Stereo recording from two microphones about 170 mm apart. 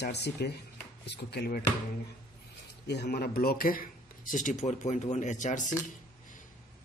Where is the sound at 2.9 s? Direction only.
70° left (ahead or behind); by 5.8 s 45° left (ahead or behind).